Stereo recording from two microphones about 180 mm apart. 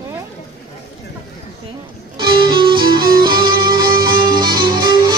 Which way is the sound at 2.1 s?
25° right (ahead or behind).